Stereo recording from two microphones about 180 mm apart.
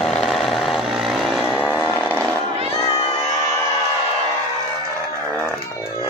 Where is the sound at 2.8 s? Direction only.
20° left (ahead or behind).